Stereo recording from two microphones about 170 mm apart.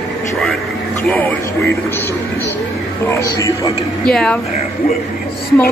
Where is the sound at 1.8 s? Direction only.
10° left (ahead or behind).